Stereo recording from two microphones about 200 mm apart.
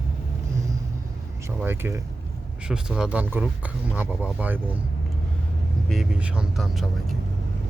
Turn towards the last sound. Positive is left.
turn(degrees=0)  # may be behind; listen again after turning